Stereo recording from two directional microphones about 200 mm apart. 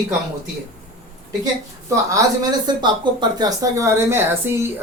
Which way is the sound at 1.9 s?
15° right (ahead or behind).